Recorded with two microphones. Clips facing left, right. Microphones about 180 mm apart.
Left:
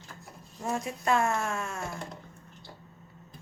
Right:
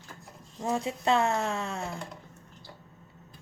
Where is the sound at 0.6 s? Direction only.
25° right (ahead or behind).